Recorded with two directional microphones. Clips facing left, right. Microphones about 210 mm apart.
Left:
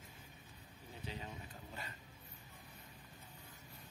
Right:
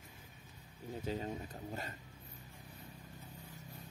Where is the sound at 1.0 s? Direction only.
45° right (ahead or behind).